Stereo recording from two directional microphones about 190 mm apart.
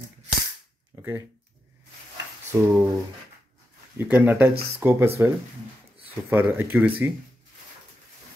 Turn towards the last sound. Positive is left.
turn(degrees=-10)  # may be behind; listen again after turning